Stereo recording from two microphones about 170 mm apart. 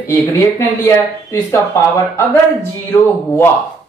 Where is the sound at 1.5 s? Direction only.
15° left (ahead or behind).